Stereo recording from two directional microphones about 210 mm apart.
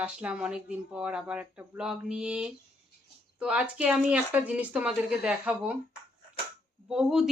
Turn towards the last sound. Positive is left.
turn(degrees=-5)  # may be behind; listen again after turning